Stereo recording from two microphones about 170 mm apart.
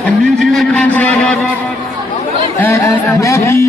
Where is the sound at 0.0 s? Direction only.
Centre (ahead or behind).